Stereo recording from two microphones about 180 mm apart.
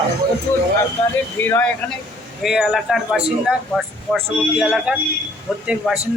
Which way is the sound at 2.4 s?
Centre (ahead or behind).